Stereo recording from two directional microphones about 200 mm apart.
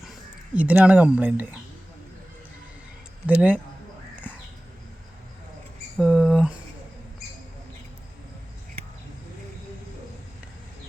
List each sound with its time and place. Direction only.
0.5 s speech: 5° right (ahead or behind)
3.2 s speech: 10° right (ahead or behind)
6.0 s mouse: centre (ahead or behind)